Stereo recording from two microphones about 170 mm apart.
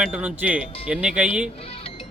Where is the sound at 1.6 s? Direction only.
35° left (ahead or behind).